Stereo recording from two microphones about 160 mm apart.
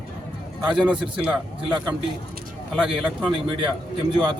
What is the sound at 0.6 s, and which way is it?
Speech, centre (ahead or behind).